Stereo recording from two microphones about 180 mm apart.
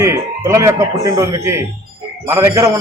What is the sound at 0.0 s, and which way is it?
A man's voice, 15° right (ahead or behind).